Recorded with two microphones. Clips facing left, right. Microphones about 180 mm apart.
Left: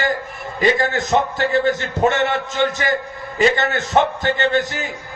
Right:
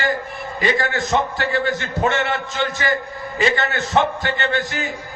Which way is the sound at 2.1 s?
45° left (ahead or behind).